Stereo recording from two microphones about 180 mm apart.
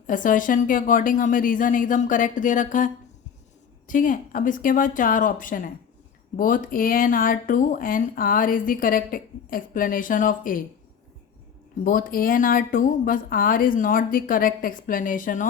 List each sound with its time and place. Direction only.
0.1 s speech: 45° left (ahead or behind)
11.9 s speech: 50° left (ahead or behind)